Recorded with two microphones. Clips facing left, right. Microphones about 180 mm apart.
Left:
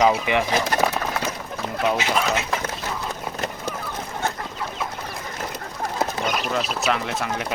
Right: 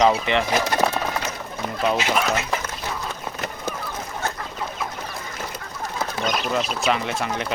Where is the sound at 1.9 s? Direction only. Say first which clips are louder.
Right 1 dB; centre (ahead or behind).